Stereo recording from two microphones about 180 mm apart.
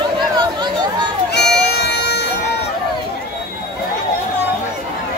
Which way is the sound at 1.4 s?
65° left (ahead or behind).